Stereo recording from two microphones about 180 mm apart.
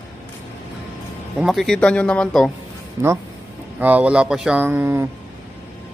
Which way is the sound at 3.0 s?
20° right (ahead or behind).